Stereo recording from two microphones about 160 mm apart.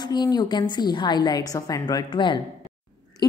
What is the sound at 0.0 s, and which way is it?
A woman's voice, 25° left (ahead or behind).